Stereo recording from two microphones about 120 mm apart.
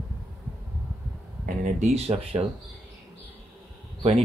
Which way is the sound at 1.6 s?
75° right (ahead or behind).